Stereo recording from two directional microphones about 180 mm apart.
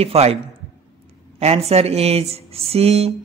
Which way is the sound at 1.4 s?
35° right (ahead or behind).